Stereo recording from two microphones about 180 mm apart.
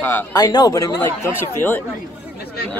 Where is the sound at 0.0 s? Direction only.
15° left (ahead or behind).